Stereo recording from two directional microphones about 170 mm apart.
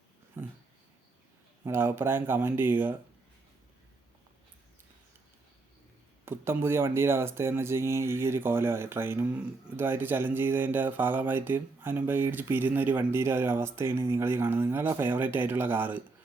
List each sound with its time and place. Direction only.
0.4 s a sound: 15° right (ahead or behind)
1.6 s speech: 15° right (ahead or behind)
6.2 s speech: 15° right (ahead or behind)